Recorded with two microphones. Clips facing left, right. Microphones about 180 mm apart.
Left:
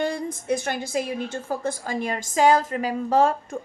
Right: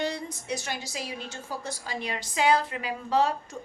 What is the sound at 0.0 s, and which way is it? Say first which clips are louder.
A woman's voice: left 5 dB; 50° left (ahead or behind).